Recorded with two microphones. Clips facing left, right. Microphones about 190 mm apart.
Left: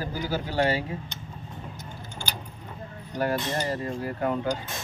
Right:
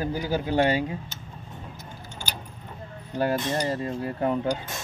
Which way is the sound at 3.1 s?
25° right (ahead or behind).